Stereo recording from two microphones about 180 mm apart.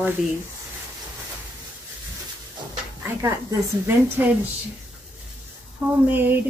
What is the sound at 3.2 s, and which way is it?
A woman's voice, 15° right (ahead or behind).